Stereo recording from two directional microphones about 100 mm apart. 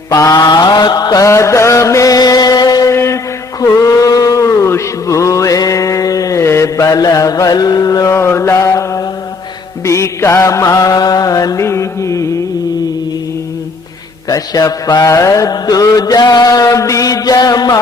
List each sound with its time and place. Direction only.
0.1 s mantra: 40° left (ahead or behind)
2.9 s mantra: 25° left (ahead or behind)
3.6 s a sound: 35° left (ahead or behind)
8.1 s mantra: 25° left (ahead or behind)
14.3 s mantra: 35° left (ahead or behind)